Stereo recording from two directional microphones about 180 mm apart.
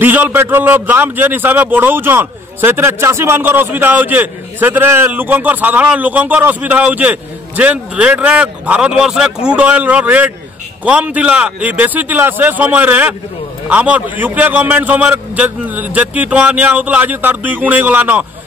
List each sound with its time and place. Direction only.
0.0 s a man's voice: 10° right (ahead or behind)